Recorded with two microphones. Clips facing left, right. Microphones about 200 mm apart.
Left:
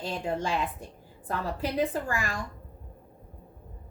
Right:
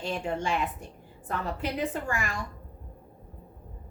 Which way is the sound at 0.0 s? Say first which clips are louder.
Even; 35° left (ahead or behind).